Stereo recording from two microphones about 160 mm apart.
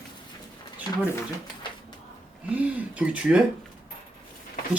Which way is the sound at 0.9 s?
25° left (ahead or behind).